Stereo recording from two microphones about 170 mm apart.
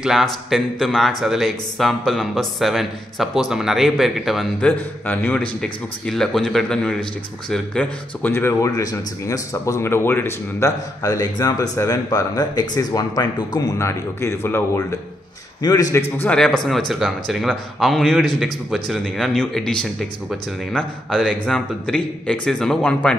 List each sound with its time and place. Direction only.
0.0 s a man's voice: centre (ahead or behind); by 16.0 s 20° left (ahead or behind)
16.2 s a man's voice: 5° left (ahead or behind)